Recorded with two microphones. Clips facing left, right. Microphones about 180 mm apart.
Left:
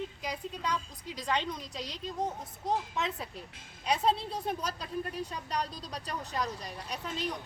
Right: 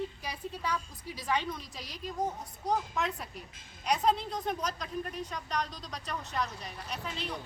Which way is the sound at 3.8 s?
30° left (ahead or behind).